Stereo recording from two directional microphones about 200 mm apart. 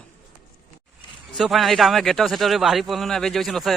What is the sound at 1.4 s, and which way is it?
A man's voice, centre (ahead or behind).